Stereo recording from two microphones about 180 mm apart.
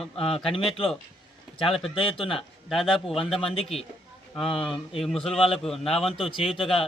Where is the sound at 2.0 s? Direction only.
30° left (ahead or behind).